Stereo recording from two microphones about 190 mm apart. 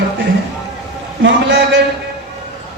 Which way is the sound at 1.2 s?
75° right (ahead or behind).